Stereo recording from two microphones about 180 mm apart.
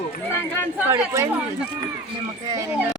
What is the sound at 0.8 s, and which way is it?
Speech, 15° right (ahead or behind).